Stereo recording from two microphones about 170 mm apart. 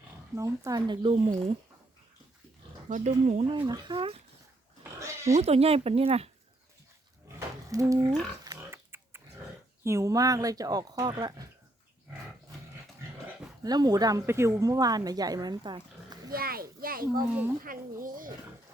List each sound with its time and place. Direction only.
0.3 s speech: 20° right (ahead or behind)
2.9 s speech: 45° right (ahead or behind)
3.5 s speech: 30° right (ahead or behind)
4.8 s pig: 15° right (ahead or behind)
5.4 s speech: 35° right (ahead or behind)
7.3 s a sound: 20° right (ahead or behind)
8.4 s pig: 15° right (ahead or behind)
9.8 s speech: 15° right (ahead or behind)
13.6 s speech: 25° right (ahead or behind)
16.3 s a child's voice: 60° right (ahead or behind)